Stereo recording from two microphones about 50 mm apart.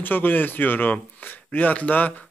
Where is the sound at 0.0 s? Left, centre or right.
Left.